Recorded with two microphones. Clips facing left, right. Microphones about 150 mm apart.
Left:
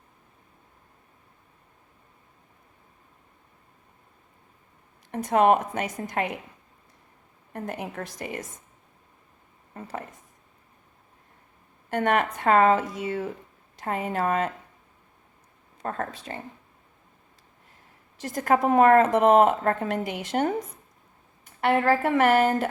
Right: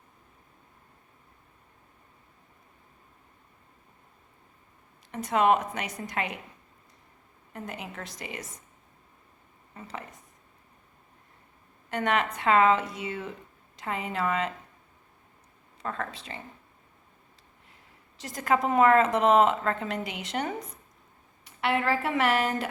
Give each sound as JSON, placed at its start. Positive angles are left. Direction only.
{"t": 5.1, "sound": "a woman's voice", "side_deg": 50}
{"t": 7.5, "sound": "a woman's voice", "side_deg": 50}
{"t": 9.7, "sound": "a woman's voice", "side_deg": 50}
{"t": 11.9, "sound": "a woman's voice", "side_deg": 50}
{"t": 15.8, "sound": "a woman's voice", "side_deg": 50}
{"t": 18.2, "sound": "a woman's voice", "side_deg": 50}